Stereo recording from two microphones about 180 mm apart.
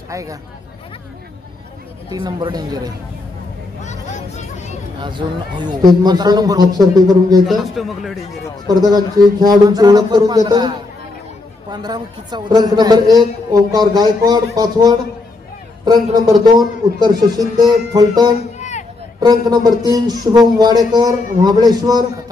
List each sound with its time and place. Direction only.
0.1 s speech: 20° right (ahead or behind)
2.1 s a man's voice: 25° right (ahead or behind)
3.8 s vehicle: 40° left (ahead or behind)
5.0 s a man's voice: 25° right (ahead or behind)
7.4 s a man's voice: centre (ahead or behind)
8.6 s a man's voice: 20° right (ahead or behind)
11.7 s a man's voice: 25° right (ahead or behind)
18.6 s a sound: 40° left (ahead or behind)
19.1 s a man's voice: 20° right (ahead or behind)